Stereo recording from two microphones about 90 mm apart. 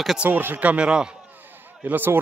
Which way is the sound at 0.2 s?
20° right (ahead or behind).